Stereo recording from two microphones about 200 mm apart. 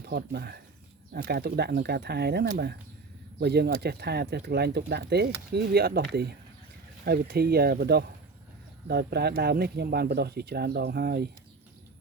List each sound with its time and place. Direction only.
0.0 s speech: 55° right (ahead or behind)